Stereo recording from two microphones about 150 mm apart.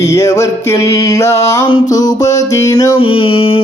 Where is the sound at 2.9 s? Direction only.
40° left (ahead or behind).